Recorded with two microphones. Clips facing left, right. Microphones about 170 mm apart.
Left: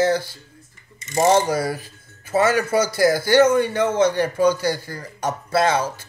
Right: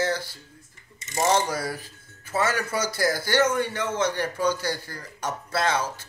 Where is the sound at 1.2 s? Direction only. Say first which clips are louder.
Left 6 dB; 50° left (ahead or behind).